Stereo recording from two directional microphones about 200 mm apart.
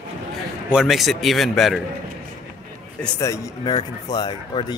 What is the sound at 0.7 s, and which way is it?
Speech, centre (ahead or behind).